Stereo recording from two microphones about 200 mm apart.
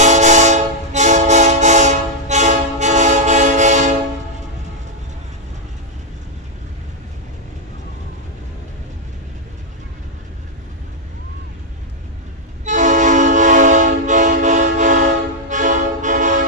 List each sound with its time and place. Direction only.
0.0 s train: 35° right (ahead or behind)
12.6 s train: 40° right (ahead or behind)